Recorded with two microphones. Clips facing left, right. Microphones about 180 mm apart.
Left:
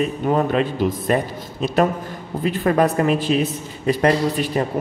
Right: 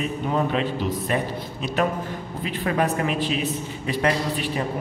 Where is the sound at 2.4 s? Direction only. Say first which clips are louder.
Left 6 dB; 45° left (ahead or behind).